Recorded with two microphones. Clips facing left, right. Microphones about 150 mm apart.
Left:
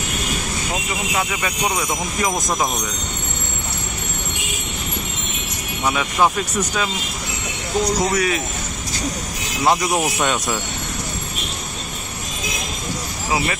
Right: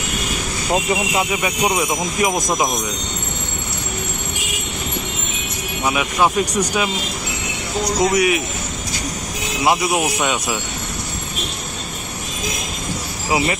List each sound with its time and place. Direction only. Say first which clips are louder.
1.1 s speech: right 3 dB; 20° right (ahead or behind)
5.9 s speech: even; 10° right (ahead or behind)
8.0 s speech: right 3 dB; 15° right (ahead or behind)
9.7 s speech: even; 5° right (ahead or behind)